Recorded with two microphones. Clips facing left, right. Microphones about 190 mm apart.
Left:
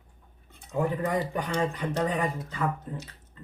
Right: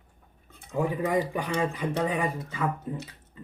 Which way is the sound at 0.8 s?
10° right (ahead or behind).